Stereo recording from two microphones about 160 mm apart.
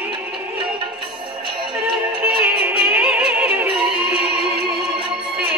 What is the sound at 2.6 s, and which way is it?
Music, 10° right (ahead or behind).